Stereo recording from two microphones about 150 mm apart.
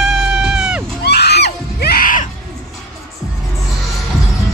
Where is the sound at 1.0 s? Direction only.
90° left; by 2.2 s 70° left (ahead or behind).